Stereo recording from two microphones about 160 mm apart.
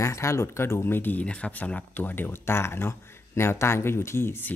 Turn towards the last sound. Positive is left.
turn(degrees=15)  # may be behind; listen again after turning